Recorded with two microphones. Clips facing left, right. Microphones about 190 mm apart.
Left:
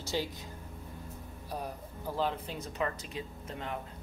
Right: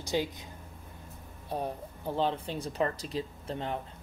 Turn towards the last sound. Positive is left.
turn(degrees=-30)  # may be behind; listen again after turning